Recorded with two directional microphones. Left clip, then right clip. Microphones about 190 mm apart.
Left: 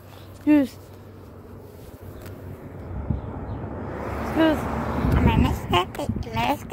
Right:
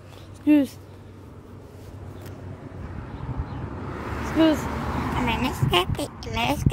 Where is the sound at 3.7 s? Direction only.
30° right (ahead or behind).